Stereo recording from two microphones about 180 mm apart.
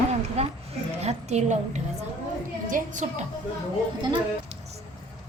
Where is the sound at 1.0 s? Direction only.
40° right (ahead or behind).